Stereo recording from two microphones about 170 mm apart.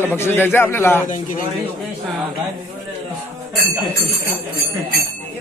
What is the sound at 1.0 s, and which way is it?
Speech, 50° left (ahead or behind).